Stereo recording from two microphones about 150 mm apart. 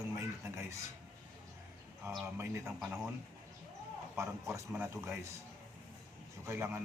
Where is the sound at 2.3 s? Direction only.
15° right (ahead or behind).